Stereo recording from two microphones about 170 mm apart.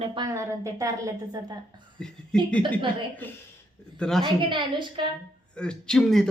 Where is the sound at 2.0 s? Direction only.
5° left (ahead or behind).